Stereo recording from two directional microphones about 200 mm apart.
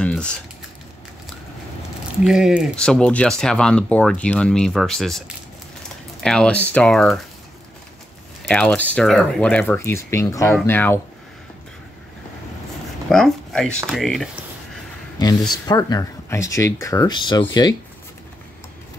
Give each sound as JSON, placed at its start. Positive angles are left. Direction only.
{"t": 0.0, "sound": "typing", "side_deg": 5}
{"t": 2.2, "sound": "speech", "side_deg": -5}
{"t": 6.2, "sound": "speech", "side_deg": 5}
{"t": 8.5, "sound": "speech", "side_deg": 5}
{"t": 13.1, "sound": "speech", "side_deg": 5}
{"t": 15.1, "sound": "speech", "side_deg": 20}